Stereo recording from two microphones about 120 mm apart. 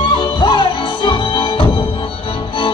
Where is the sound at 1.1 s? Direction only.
40° left (ahead or behind).